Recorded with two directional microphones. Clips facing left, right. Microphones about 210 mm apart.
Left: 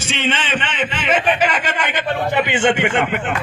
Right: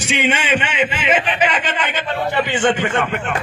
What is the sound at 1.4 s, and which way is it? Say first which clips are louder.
A man's voice: even; 10° left (ahead or behind).